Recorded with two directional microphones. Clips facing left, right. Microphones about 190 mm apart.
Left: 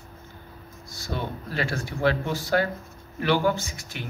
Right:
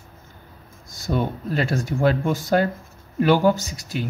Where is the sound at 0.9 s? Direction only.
45° right (ahead or behind).